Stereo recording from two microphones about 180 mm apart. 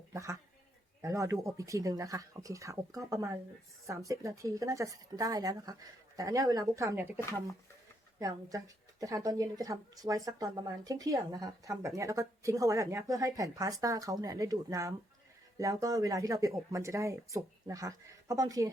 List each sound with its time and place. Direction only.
0.1 s a woman's voice: 15° right (ahead or behind)
7.2 s speech: 15° left (ahead or behind)
8.2 s a woman's voice: 20° right (ahead or behind)